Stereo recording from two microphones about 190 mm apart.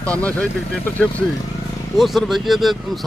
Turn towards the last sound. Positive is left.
turn(degrees=0)  # may be behind; listen again after turning